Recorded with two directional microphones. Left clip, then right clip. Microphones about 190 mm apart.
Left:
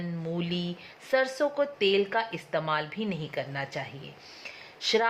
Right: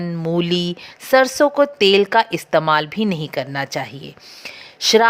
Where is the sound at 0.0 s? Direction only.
45° right (ahead or behind).